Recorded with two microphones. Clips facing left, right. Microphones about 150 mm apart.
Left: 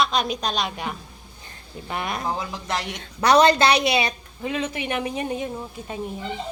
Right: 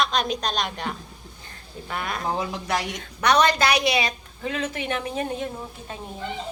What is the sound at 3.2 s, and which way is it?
A woman's voice, 30° left (ahead or behind).